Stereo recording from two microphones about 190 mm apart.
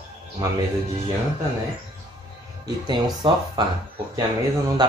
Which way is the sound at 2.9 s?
25° right (ahead or behind).